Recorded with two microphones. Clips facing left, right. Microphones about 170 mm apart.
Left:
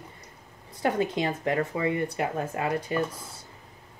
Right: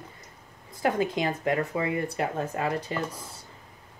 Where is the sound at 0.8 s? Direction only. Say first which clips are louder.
Even; 25° left (ahead or behind).